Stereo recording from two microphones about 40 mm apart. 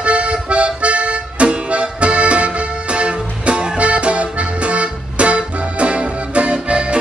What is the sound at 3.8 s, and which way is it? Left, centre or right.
Accordion, right.